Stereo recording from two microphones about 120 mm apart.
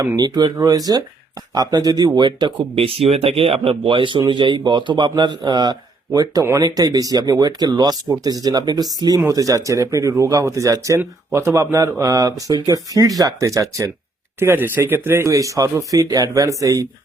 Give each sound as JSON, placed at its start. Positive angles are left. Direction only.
{"t": 0.2, "sound": "speech", "side_deg": -35}